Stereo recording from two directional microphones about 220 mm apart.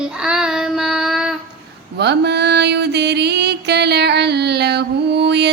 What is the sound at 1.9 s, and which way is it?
Mantra, 50° right (ahead or behind).